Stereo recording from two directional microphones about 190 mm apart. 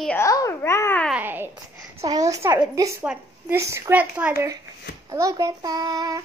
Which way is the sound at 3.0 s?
5° right (ahead or behind).